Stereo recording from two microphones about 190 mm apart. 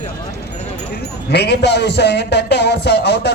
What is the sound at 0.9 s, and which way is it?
A man's voice, 60° left (ahead or behind).